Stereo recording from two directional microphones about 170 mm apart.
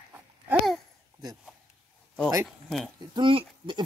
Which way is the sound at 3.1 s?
30° right (ahead or behind).